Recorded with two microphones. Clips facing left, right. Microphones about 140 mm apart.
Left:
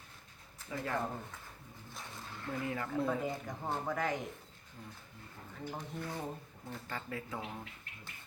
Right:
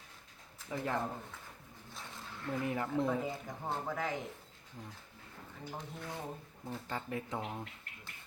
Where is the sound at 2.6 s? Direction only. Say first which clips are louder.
Right 2 dB; 20° right (ahead or behind).